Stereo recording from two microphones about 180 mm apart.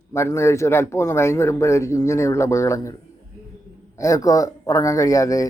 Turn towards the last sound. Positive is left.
turn(degrees=20)  # may be behind; listen again after turning